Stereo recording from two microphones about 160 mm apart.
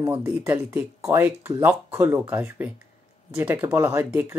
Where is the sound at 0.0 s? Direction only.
10° right (ahead or behind).